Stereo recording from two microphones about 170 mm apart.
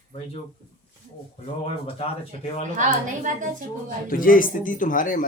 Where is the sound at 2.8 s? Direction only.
45° right (ahead or behind).